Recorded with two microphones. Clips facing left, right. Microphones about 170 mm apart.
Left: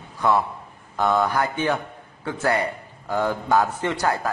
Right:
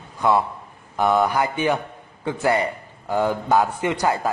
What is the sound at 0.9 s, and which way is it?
A man's voice, 15° right (ahead or behind).